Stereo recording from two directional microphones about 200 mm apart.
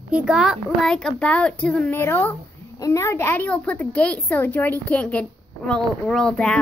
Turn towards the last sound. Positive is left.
turn(degrees=5)  # may be behind; listen again after turning